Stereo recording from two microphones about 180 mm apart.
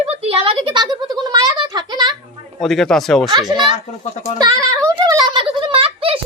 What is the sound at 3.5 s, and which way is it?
Speech, 25° right (ahead or behind).